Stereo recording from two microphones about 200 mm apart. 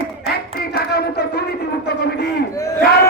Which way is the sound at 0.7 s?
50° left (ahead or behind).